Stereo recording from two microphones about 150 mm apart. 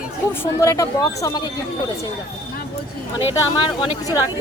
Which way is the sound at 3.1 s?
35° left (ahead or behind).